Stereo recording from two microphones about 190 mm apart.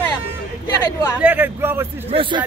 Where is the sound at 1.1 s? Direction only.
10° right (ahead or behind).